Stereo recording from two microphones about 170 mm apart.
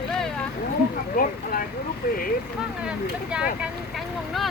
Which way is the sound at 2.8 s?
5° right (ahead or behind).